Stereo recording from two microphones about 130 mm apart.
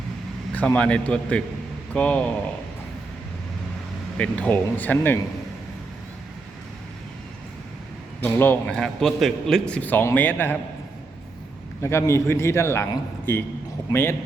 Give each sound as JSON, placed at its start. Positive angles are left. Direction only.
{"t": 0.5, "sound": "a man's voice", "side_deg": 10}
{"t": 4.2, "sound": "a man's voice", "side_deg": 10}
{"t": 8.2, "sound": "a man's voice", "side_deg": 15}
{"t": 11.8, "sound": "a man's voice", "side_deg": 20}